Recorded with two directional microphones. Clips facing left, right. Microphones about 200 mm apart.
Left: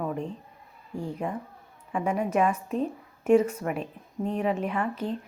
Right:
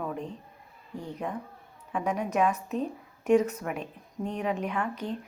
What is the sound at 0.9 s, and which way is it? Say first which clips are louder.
A woman's voice: left 3 dB; 10° left (ahead or behind).